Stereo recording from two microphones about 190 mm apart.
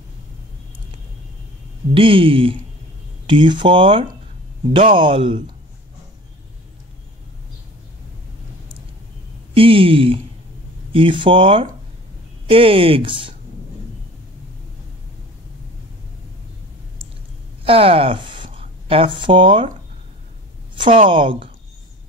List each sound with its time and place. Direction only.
2.0 s speech: 30° right (ahead or behind)
9.5 s speech: 30° right (ahead or behind)
17.6 s speech: 30° right (ahead or behind)
20.7 s a woman's voice: 25° right (ahead or behind)